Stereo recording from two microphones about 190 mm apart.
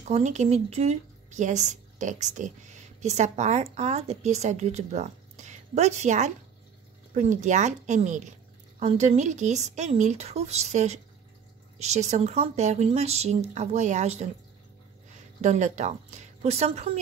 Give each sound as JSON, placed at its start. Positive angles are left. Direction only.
{"t": 0.1, "sound": "a woman's voice", "side_deg": -35}
{"t": 15.4, "sound": "speech", "side_deg": -40}